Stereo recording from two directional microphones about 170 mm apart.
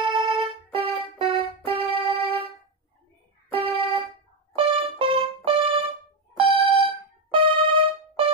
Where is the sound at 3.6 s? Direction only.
30° right (ahead or behind).